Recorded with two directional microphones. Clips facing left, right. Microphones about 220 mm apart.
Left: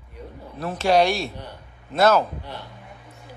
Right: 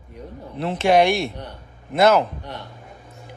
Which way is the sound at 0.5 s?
20° right (ahead or behind).